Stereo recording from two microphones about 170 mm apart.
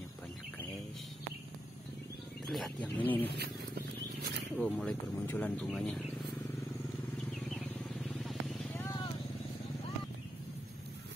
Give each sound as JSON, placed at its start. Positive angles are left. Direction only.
{"t": 2.4, "sound": "speech", "side_deg": 5}
{"t": 3.3, "sound": "speech", "side_deg": -65}
{"t": 4.6, "sound": "speech", "side_deg": 10}
{"t": 8.0, "sound": "vehicle", "side_deg": 5}
{"t": 8.7, "sound": "vehicle", "side_deg": 25}